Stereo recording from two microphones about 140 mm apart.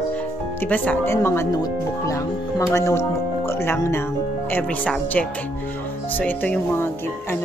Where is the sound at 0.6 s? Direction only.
10° left (ahead or behind).